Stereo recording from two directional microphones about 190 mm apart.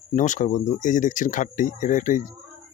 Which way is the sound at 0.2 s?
40° left (ahead or behind).